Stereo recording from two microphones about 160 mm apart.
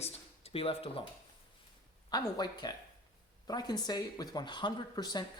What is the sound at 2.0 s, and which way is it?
Speech, 25° left (ahead or behind).